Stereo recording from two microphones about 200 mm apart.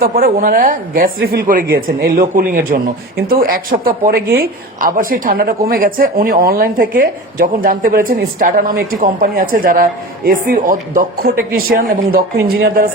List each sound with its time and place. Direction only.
0.0 s a woman's voice: 45° right (ahead or behind)